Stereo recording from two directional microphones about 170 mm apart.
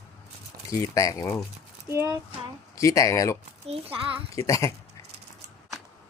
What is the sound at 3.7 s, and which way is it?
Speech, 35° right (ahead or behind).